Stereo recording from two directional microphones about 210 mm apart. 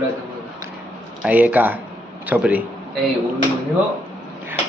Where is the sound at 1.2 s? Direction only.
5° right (ahead or behind).